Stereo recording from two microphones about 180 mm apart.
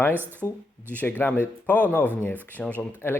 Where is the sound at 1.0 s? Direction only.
10° left (ahead or behind).